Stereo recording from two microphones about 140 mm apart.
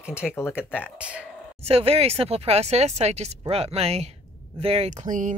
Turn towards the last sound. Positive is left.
turn(degrees=-65)  # may be behind; listen again after turning